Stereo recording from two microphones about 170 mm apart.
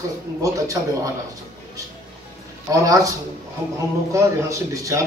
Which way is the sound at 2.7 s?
20° right (ahead or behind).